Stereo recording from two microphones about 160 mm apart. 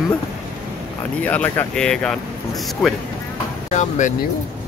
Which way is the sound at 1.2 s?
10° left (ahead or behind).